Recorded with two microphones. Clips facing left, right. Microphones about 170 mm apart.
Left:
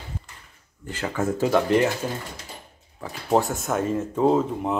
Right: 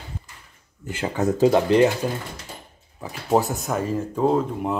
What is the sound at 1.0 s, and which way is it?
Speech, 20° right (ahead or behind).